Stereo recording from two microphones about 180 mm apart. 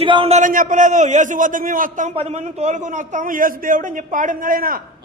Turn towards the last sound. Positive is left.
turn(degrees=-50)  # may be behind; listen again after turning